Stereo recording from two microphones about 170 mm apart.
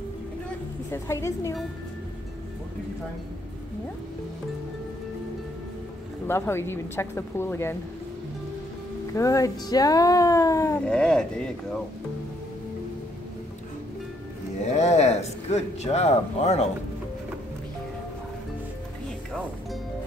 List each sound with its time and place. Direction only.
0.9 s a woman's voice: 15° left (ahead or behind)
6.2 s a woman's voice: 15° left (ahead or behind)
9.1 s speech: 20° left (ahead or behind)
10.9 s speech: 5° left (ahead or behind)
14.6 s a man's voice: 40° left (ahead or behind)